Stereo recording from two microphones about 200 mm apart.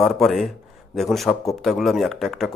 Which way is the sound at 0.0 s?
Centre (ahead or behind).